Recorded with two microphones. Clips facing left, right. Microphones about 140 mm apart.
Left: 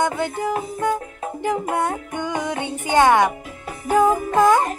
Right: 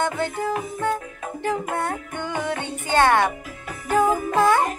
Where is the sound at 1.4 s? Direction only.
15° left (ahead or behind).